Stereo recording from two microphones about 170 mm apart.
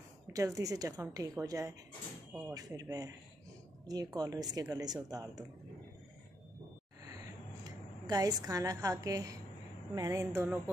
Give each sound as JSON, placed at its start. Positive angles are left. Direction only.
{"t": 0.3, "sound": "a woman's voice", "side_deg": -20}
{"t": 7.6, "sound": "a woman's voice", "side_deg": -20}